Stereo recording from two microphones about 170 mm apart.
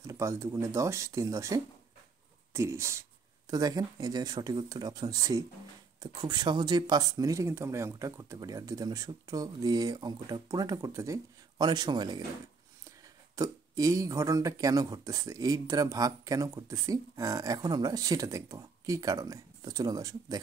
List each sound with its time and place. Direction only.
0.0 s speech: 20° right (ahead or behind)
13.4 s speech: 20° right (ahead or behind)